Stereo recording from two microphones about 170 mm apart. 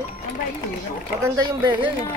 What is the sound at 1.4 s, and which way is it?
Speech, 25° right (ahead or behind).